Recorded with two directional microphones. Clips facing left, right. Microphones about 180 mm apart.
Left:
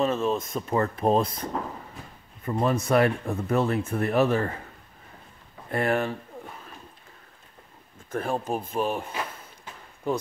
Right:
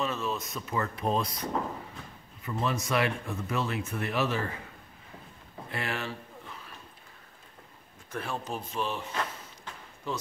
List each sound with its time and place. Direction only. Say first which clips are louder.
0.0 s speech: left 7 dB; 35° left (ahead or behind)
0.4 s speech: left 7 dB; 50° left (ahead or behind)
5.7 s a sound: left 10 dB; 50° left (ahead or behind)
8.1 s speech: left 7 dB; 50° left (ahead or behind)